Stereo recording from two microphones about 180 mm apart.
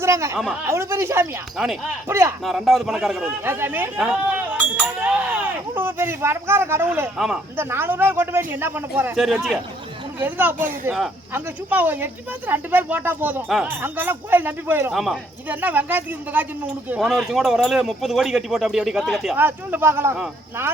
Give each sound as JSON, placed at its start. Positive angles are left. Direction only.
{"t": 0.0, "sound": "speech", "side_deg": -15}
{"t": 1.5, "sound": "speech", "side_deg": 0}
{"t": 2.0, "sound": "speech", "side_deg": -15}
{"t": 2.4, "sound": "speech", "side_deg": 0}
{"t": 5.0, "sound": "a sound", "side_deg": -10}
{"t": 7.2, "sound": "speech", "side_deg": -5}
{"t": 19.4, "sound": "speech", "side_deg": -10}